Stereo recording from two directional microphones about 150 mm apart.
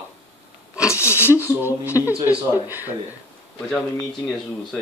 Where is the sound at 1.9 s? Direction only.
20° left (ahead or behind).